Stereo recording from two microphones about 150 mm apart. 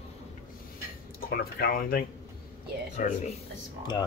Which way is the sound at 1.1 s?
85° left.